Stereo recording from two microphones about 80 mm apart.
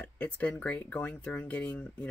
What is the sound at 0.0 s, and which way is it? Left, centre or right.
Speech, centre.